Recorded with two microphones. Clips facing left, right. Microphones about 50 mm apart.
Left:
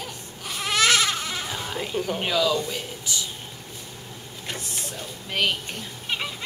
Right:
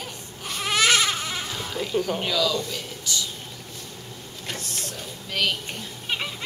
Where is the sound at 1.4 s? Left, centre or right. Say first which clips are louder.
Even; centre.